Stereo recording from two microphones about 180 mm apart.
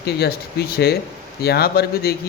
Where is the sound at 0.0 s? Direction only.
60° left (ahead or behind).